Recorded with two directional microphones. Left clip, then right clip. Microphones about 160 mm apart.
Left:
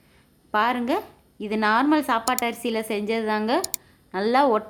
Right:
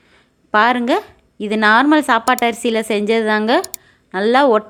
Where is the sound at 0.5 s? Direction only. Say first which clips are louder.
Right 9 dB; 30° right (ahead or behind).